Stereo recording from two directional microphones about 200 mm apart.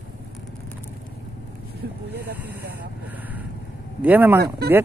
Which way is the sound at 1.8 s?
50° right (ahead or behind).